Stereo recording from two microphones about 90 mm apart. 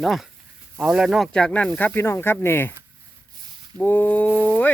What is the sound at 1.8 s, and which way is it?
Speech, 25° left (ahead or behind).